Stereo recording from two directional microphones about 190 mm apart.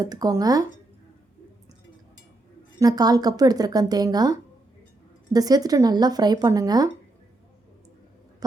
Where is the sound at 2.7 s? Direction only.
20° right (ahead or behind).